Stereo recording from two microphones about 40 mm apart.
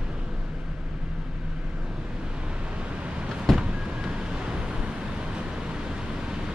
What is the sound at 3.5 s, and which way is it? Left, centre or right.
Vehicle, centre.